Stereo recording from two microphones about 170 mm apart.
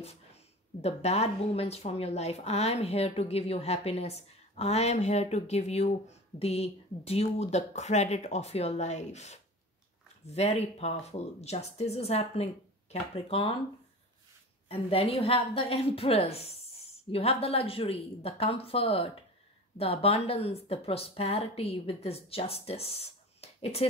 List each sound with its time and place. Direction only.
0.7 s a woman's voice: 40° left (ahead or behind)
14.7 s a woman's voice: 35° left (ahead or behind)